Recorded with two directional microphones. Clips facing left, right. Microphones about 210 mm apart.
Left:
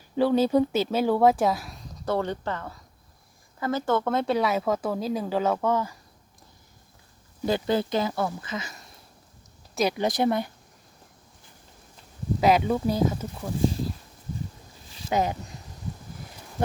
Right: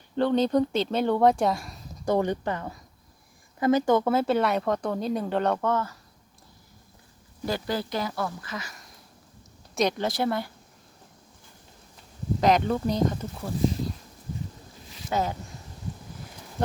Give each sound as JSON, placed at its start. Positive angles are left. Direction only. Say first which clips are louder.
{"t": 0.2, "sound": "speech", "louder": "left 1 dB", "side_deg": 5}
{"t": 2.0, "sound": "speech", "louder": "right 2 dB", "side_deg": -15}
{"t": 7.4, "sound": "speech", "louder": "left 4 dB", "side_deg": 20}
{"t": 9.7, "sound": "speech", "louder": "left 1 dB", "side_deg": 5}
{"t": 12.4, "sound": "speech", "louder": "left 1 dB", "side_deg": 5}
{"t": 15.1, "sound": "speech", "louder": "left 2 dB", "side_deg": 15}